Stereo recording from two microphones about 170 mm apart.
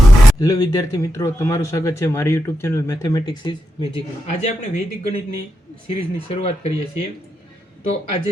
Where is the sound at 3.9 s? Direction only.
40° left (ahead or behind).